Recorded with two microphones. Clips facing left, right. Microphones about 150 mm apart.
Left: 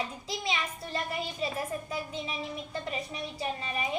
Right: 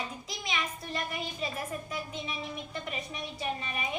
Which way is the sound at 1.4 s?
30° left (ahead or behind).